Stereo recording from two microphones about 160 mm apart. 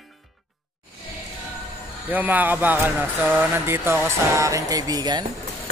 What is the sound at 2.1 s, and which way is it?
Speech, 10° right (ahead or behind).